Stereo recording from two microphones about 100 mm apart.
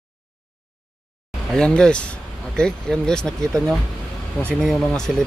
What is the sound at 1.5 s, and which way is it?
Speech, 5° left (ahead or behind).